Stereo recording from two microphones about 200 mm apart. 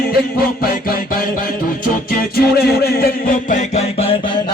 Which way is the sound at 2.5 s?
50° left (ahead or behind).